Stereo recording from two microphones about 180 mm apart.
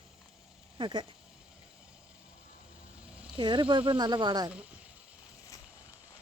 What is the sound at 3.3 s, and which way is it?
Speech, 30° right (ahead or behind).